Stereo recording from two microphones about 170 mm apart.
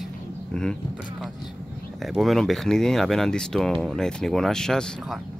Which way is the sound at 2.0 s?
Centre (ahead or behind).